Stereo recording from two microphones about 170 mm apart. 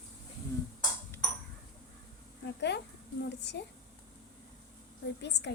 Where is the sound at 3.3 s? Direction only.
80° left.